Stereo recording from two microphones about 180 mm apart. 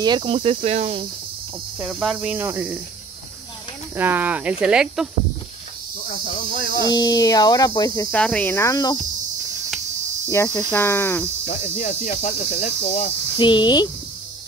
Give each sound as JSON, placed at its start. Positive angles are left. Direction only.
{"t": 0.0, "sound": "insect", "side_deg": -25}
{"t": 1.9, "sound": "speech", "side_deg": -5}
{"t": 3.9, "sound": "speech", "side_deg": -10}
{"t": 6.0, "sound": "cricket", "side_deg": 50}
{"t": 6.9, "sound": "speech", "side_deg": 20}
{"t": 8.1, "sound": "cricket", "side_deg": 5}
{"t": 10.3, "sound": "cricket", "side_deg": 15}
{"t": 11.7, "sound": "cricket", "side_deg": 40}
{"t": 13.4, "sound": "speech", "side_deg": 25}